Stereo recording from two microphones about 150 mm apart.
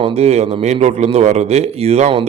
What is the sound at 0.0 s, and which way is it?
A man's voice, 45° right (ahead or behind).